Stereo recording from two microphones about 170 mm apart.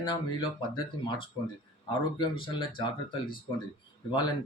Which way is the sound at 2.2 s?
30° left (ahead or behind).